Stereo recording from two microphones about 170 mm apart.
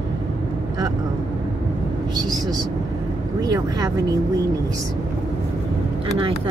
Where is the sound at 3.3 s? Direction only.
20° right (ahead or behind).